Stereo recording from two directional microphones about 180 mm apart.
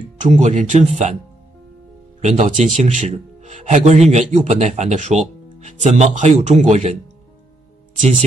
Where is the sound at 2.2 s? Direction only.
40° right (ahead or behind).